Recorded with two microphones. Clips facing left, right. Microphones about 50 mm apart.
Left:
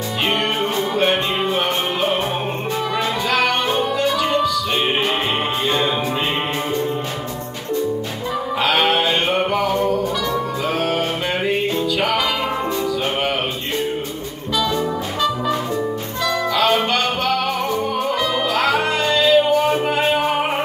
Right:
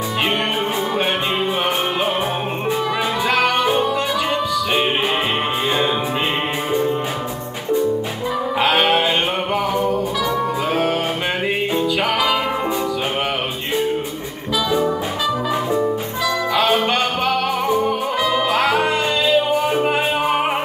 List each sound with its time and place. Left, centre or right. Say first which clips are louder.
3.3 s music: right 2 dB; centre
8.5 s music: right 1 dB; right
16.9 s music: even; right